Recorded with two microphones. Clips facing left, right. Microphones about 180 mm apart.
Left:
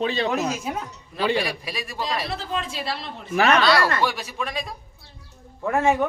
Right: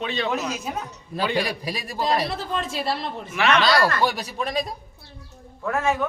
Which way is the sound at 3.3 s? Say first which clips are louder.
Left 2 dB; 40° left (ahead or behind).